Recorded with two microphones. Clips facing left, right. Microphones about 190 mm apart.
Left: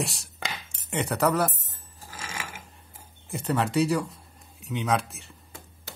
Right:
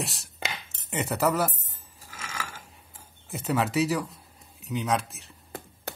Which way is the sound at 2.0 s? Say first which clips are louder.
Left 1 dB; 30° left (ahead or behind).